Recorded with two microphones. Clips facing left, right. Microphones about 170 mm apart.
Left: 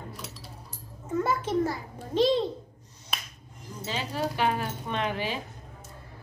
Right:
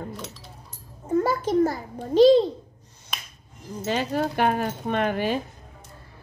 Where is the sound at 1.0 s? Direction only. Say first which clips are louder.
Right 5 dB; 35° right (ahead or behind).